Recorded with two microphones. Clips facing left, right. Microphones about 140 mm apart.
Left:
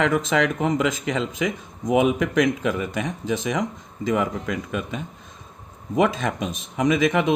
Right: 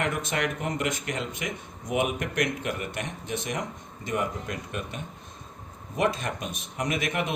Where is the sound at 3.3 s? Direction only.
90° left.